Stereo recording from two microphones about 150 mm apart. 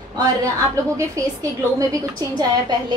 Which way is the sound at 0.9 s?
20° right (ahead or behind).